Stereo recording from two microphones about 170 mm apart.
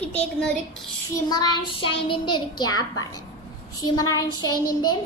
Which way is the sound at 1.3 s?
25° left (ahead or behind).